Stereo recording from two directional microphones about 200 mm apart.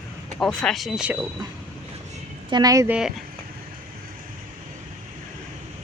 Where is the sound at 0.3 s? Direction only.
5° left (ahead or behind).